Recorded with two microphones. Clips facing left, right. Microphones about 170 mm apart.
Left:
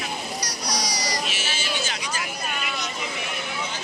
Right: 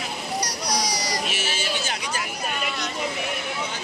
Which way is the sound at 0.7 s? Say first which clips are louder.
Right 1 dB; 55° right (ahead or behind).